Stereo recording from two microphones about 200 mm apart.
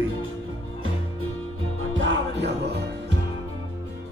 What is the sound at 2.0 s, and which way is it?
Music, 65° right (ahead or behind).